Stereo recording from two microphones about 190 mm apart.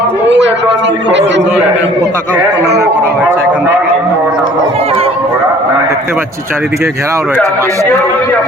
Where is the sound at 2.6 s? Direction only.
60° right (ahead or behind).